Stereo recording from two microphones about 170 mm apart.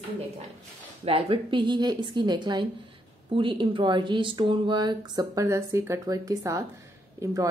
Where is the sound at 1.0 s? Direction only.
35° right (ahead or behind).